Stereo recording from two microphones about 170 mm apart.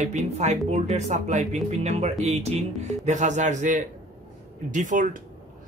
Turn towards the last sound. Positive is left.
turn(degrees=-50)  # may be behind; listen again after turning